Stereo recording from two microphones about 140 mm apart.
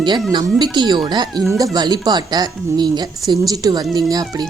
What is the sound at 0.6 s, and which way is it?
A woman's voice, 30° right (ahead or behind).